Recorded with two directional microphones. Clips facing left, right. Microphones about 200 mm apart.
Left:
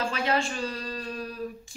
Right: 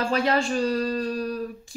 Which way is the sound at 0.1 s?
40° right (ahead or behind).